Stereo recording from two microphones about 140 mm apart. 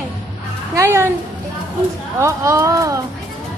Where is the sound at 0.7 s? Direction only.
20° right (ahead or behind).